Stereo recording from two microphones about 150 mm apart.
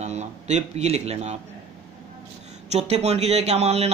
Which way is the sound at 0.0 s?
50° right (ahead or behind).